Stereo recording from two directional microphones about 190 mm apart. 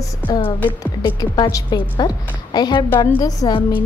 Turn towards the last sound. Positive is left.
turn(degrees=20)  # may be behind; listen again after turning